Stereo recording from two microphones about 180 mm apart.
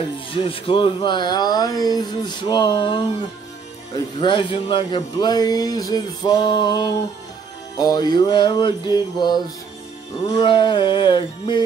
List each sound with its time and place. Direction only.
0.3 s speech: 30° left (ahead or behind)
4.2 s speech: 30° left (ahead or behind)